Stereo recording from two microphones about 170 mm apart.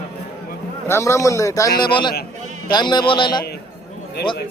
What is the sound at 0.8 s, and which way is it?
A man's voice, 15° left (ahead or behind).